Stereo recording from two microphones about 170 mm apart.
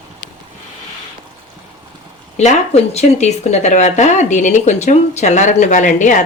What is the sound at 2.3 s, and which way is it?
Speech, 40° left (ahead or behind).